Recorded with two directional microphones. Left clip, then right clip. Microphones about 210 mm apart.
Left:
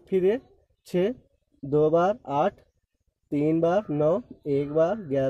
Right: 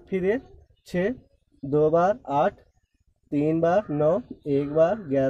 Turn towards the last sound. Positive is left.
turn(degrees=40)  # may be behind; listen again after turning